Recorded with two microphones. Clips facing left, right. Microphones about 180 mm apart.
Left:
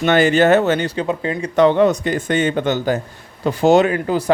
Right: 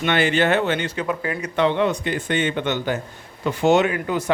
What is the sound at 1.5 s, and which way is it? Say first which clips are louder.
Speech: left 7 dB; 40° left (ahead or behind).